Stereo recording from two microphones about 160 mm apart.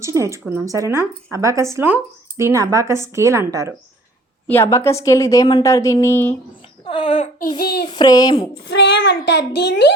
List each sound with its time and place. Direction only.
0.0 s speech: 15° right (ahead or behind)
4.4 s a woman's voice: 15° left (ahead or behind)
6.8 s a woman's voice: 35° left (ahead or behind)
8.7 s a child's voice: 90° left